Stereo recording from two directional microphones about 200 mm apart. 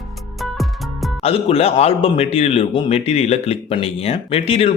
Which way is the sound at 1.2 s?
30° left (ahead or behind).